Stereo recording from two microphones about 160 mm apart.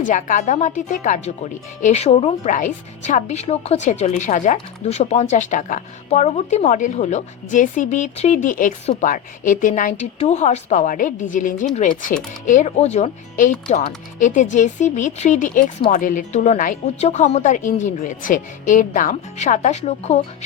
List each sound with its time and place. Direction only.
0.0 s a woman's voice: 55° left (ahead or behind)